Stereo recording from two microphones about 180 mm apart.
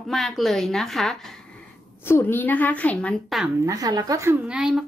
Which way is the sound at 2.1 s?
10° left (ahead or behind).